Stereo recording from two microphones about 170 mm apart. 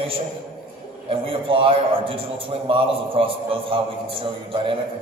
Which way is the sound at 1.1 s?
30° right (ahead or behind).